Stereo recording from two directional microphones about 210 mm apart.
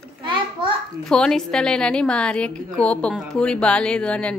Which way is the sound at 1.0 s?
5° left (ahead or behind).